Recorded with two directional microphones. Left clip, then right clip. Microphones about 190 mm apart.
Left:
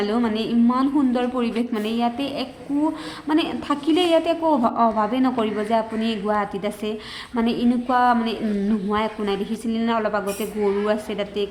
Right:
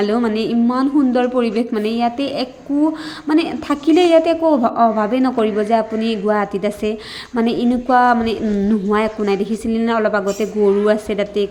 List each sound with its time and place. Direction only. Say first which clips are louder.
0.0 s a woman's voice: right 5 dB; 20° right (ahead or behind)